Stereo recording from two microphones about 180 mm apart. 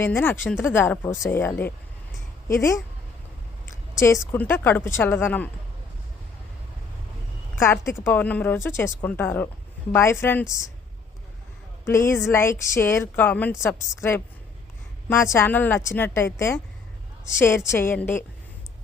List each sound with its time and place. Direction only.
0.0 s speech: 10° left (ahead or behind)
4.3 s speech: 10° left (ahead or behind)
7.5 s a woman's voice: 15° left (ahead or behind)
11.9 s speech: 15° left (ahead or behind)
15.1 s speech: 15° left (ahead or behind)
17.7 s speech: 15° left (ahead or behind)